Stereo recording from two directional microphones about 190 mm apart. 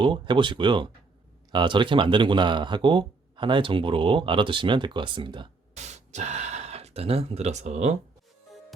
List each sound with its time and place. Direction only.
0.0 s speech: 25° right (ahead or behind)
5.7 s speech: 35° right (ahead or behind)